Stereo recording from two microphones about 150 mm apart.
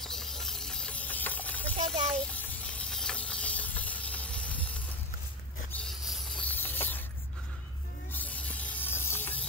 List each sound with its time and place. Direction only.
0.0 s hiss: centre (ahead or behind)
2.1 s snake: 10° left (ahead or behind)
5.7 s a sound: 5° left (ahead or behind)
8.1 s spray: 10° left (ahead or behind)